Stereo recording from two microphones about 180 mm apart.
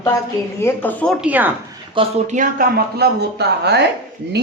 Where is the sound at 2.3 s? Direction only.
55° right (ahead or behind).